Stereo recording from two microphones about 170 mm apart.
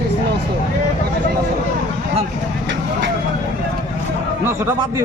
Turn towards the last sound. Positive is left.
turn(degrees=-15)  # may be behind; listen again after turning